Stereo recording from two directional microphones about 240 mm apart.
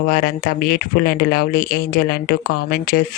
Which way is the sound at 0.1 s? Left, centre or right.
Left.